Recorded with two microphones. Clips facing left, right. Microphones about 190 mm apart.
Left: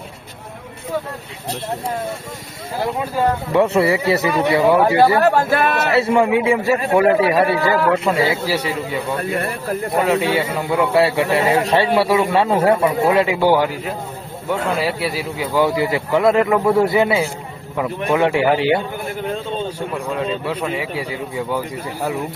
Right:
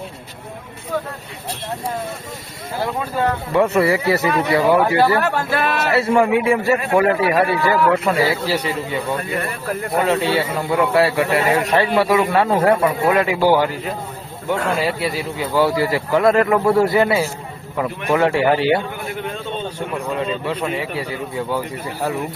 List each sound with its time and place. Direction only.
3.2 s speech: 20° left (ahead or behind)
5.3 s speech: 45° left (ahead or behind)
6.1 s speech: 5° left (ahead or behind)
6.3 s speech: 20° left (ahead or behind)
8.4 s speech: 10° left (ahead or behind)
10.9 s speech: 25° left (ahead or behind)
12.2 s speech: centre (ahead or behind)
13.0 s speech: 25° left (ahead or behind)
13.4 s speech: centre (ahead or behind); by 16.0 s 20° left (ahead or behind)
16.0 s speech: centre (ahead or behind)
18.2 s speech: 15° left (ahead or behind)
20.1 s speech: centre (ahead or behind)